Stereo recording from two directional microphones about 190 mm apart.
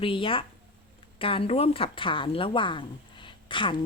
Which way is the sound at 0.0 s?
25° left (ahead or behind).